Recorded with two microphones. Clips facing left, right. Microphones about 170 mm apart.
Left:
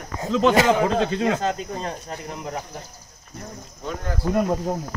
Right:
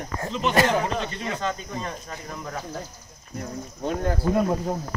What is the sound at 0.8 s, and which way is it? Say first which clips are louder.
Speech: left 7 dB; 90° left.